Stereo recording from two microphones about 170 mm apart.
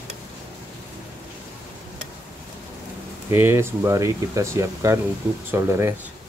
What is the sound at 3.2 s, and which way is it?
Speech, 15° right (ahead or behind).